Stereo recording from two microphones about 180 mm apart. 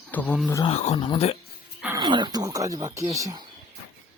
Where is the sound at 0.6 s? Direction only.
35° left (ahead or behind).